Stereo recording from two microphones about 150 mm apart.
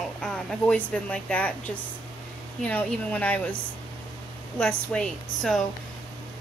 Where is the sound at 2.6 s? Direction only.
10° left (ahead or behind).